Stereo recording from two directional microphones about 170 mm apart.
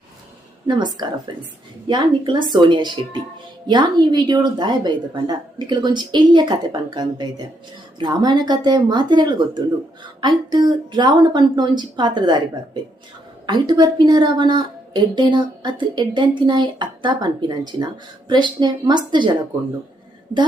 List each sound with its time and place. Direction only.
0.7 s a woman's voice: 25° right (ahead or behind)
18.3 s a woman's voice: 25° right (ahead or behind)